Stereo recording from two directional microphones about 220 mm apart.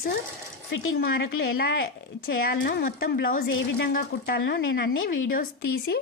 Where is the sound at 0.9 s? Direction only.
55° left (ahead or behind).